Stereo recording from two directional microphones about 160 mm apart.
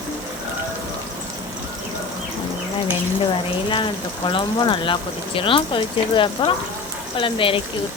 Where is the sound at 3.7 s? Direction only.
30° left (ahead or behind).